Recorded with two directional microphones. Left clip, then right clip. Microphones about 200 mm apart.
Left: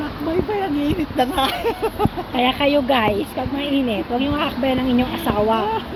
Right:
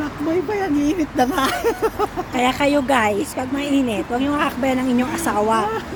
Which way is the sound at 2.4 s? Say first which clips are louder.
Left 1 dB; 20° right (ahead or behind).